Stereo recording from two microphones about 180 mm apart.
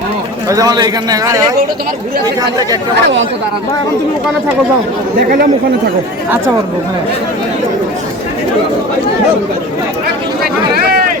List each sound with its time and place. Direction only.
0.4 s a man's voice: 20° right (ahead or behind)
2.9 s speech: 80° right
10.4 s a sound: 60° right (ahead or behind)